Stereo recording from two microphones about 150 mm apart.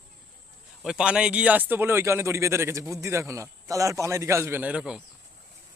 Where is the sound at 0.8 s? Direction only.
5° right (ahead or behind).